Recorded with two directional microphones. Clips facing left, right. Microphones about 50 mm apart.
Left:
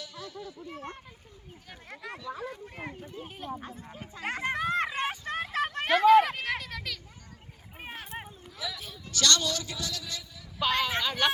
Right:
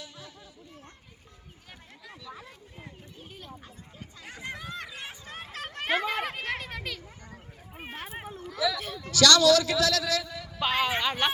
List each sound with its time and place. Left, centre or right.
0.0 s a sound: right
2.7 s speech: left
4.2 s speech: left
4.4 s chatter: left
4.9 s a sound: left
6.0 s a sound: centre
6.6 s speech: right
8.3 s speech: right
9.0 s a man's voice: right
10.6 s speech: centre
10.8 s speech: right